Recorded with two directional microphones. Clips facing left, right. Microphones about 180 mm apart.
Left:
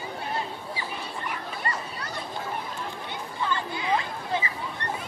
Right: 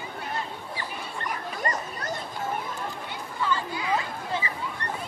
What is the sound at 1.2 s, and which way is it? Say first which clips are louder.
Dog: right 3 dB; 45° right (ahead or behind).